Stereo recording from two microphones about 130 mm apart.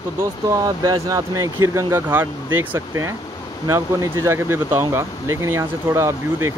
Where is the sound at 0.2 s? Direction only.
25° right (ahead or behind).